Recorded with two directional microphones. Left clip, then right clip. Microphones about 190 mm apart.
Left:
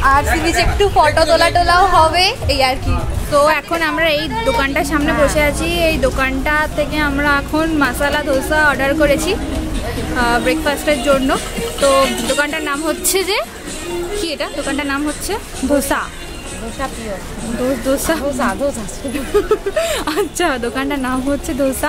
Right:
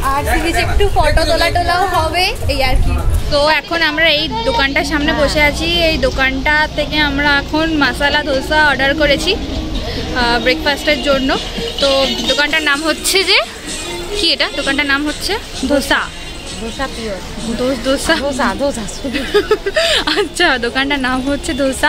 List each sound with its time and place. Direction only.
0.0 s speech: 25° left (ahead or behind)
3.3 s a woman's voice: 10° left (ahead or behind)
17.8 s a woman's voice: 5° left (ahead or behind)